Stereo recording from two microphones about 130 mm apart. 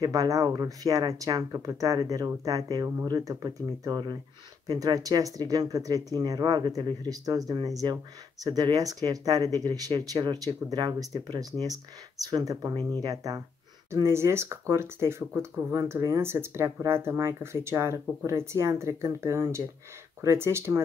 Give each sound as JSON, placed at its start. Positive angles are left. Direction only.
{"t": 0.0, "sound": "speech", "side_deg": -25}